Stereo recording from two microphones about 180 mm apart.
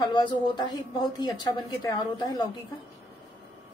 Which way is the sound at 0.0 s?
25° left (ahead or behind).